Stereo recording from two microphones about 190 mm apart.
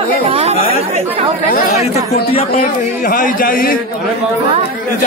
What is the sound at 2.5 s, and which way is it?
A man's voice, 45° left (ahead or behind).